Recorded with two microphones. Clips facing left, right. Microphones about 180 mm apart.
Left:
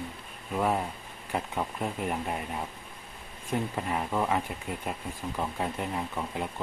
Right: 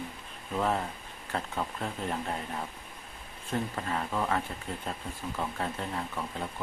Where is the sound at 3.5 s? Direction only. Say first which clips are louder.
Left 2 dB; 15° left (ahead or behind).